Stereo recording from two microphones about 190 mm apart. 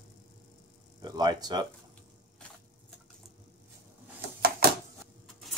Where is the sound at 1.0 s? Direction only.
20° right (ahead or behind).